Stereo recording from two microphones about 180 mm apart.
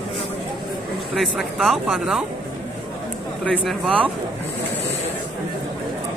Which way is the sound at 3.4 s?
5° left (ahead or behind).